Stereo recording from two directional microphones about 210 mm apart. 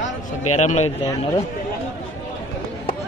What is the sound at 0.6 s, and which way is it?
Speech, 35° left (ahead or behind).